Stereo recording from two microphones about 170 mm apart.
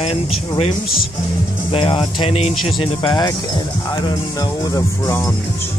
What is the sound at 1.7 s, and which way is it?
Speech, 35° left (ahead or behind).